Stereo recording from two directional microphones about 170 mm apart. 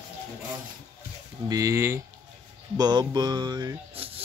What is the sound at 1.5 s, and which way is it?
Speech, 20° right (ahead or behind).